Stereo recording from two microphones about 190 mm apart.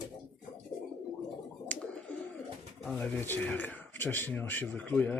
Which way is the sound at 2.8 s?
5° left (ahead or behind).